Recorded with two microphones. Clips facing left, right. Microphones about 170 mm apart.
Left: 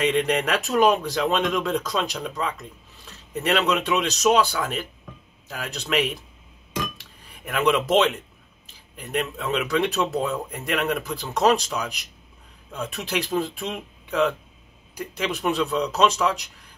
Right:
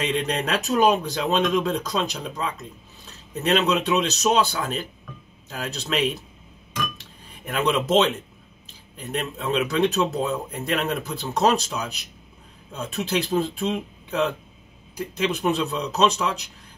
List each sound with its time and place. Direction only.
0.0 s speech: 25° right (ahead or behind)
3.4 s speech: 20° right (ahead or behind)
7.4 s speech: 25° right (ahead or behind)
9.2 s speech: 25° right (ahead or behind)